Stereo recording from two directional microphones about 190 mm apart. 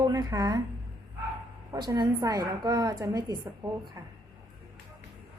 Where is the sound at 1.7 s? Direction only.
20° right (ahead or behind).